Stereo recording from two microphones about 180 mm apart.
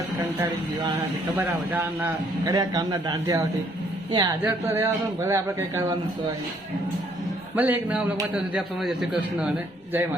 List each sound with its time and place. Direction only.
1.4 s a man's voice: 10° right (ahead or behind)
7.5 s a man's voice: 10° right (ahead or behind)